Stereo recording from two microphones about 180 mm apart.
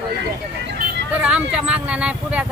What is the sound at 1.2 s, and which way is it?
Speech, 5° right (ahead or behind).